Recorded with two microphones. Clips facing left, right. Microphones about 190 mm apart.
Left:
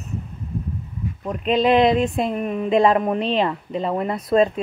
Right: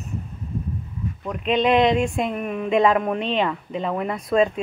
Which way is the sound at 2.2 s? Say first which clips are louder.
Left 2 dB; 35° left (ahead or behind).